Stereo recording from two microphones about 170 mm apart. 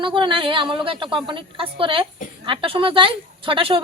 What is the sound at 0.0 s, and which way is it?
A woman's voice, 30° right (ahead or behind).